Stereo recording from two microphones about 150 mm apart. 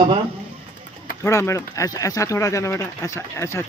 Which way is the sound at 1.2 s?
15° left (ahead or behind).